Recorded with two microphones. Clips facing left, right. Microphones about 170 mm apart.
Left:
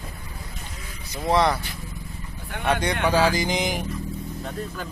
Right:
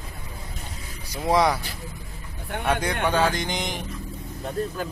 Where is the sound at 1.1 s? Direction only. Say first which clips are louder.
Even; 10° right (ahead or behind).